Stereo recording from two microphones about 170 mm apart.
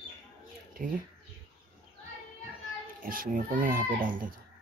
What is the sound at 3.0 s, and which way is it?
A child's voice, 55° right (ahead or behind).